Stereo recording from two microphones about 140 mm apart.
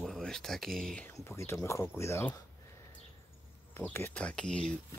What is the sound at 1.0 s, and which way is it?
Speech, 20° left (ahead or behind).